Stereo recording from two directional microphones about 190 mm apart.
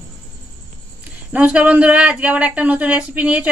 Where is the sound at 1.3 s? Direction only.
5° right (ahead or behind).